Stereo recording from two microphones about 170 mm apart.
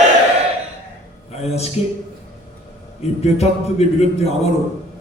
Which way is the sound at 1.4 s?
40° left (ahead or behind).